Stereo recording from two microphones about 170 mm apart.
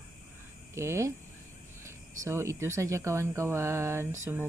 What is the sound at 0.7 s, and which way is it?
Speech, 15° right (ahead or behind).